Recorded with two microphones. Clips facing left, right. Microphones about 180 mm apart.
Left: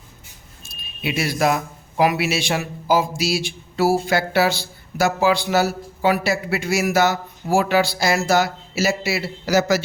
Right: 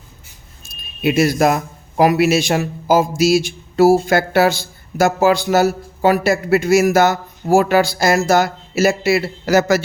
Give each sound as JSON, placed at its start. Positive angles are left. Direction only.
{"t": 0.6, "sound": "speech", "side_deg": -45}